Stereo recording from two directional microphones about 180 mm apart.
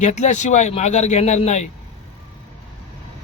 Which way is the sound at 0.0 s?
40° left (ahead or behind).